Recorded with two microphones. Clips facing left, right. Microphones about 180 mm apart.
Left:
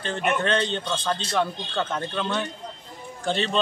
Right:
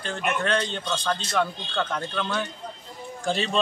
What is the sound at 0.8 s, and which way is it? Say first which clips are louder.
A man's voice: even; 5° left (ahead or behind).